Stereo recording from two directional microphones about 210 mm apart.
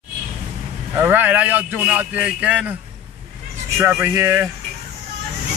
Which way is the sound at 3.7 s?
10° right (ahead or behind).